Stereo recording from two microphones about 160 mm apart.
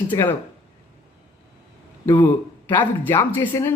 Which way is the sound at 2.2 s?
10° left (ahead or behind).